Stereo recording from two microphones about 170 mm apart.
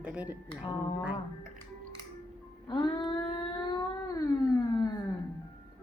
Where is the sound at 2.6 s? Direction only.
25° left (ahead or behind).